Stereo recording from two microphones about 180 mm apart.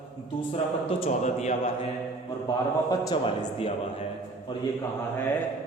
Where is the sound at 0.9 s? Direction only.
30° left (ahead or behind).